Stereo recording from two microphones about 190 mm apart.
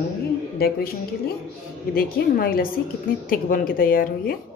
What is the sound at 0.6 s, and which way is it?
A woman's voice, 55° left (ahead or behind).